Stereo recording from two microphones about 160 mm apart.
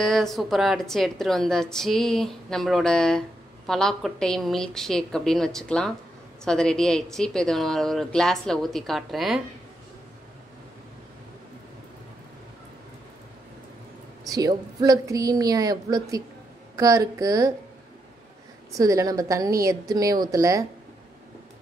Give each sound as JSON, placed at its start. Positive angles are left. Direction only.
{"t": 0.0, "sound": "a woman's voice", "side_deg": 5}
{"t": 14.2, "sound": "a woman's voice", "side_deg": -25}
{"t": 18.7, "sound": "a woman's voice", "side_deg": -20}